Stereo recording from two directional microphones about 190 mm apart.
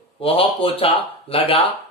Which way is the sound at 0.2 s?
30° left (ahead or behind).